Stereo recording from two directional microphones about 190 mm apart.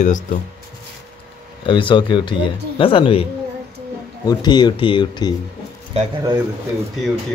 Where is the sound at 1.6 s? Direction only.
25° left (ahead or behind).